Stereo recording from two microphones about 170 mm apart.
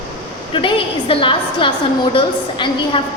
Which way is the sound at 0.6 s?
30° left (ahead or behind).